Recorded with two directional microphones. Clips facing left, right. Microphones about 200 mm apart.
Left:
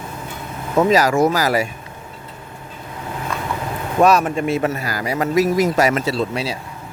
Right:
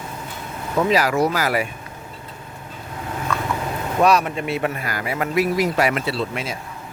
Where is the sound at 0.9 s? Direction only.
40° left (ahead or behind).